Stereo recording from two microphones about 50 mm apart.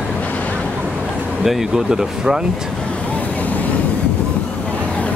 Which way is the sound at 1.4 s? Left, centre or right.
Centre.